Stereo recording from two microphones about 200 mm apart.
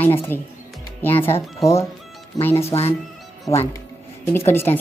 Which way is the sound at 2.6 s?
30° left (ahead or behind).